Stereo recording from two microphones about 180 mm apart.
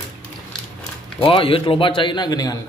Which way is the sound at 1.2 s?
30° left (ahead or behind).